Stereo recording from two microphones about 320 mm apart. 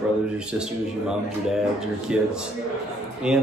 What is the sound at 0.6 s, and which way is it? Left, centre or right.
A man's voice, centre.